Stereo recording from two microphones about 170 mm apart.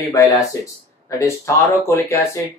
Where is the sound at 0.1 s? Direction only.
20° left (ahead or behind).